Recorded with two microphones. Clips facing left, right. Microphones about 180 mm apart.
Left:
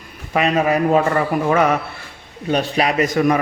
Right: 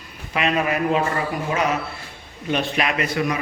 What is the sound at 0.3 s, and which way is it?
Speech, 40° left (ahead or behind).